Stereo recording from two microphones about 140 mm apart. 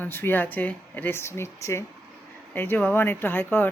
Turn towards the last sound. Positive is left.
turn(degrees=15)  # may be behind; listen again after turning